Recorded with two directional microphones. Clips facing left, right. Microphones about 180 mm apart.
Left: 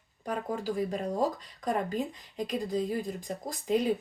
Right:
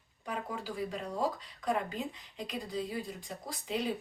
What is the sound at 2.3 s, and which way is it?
Speech, 45° left (ahead or behind).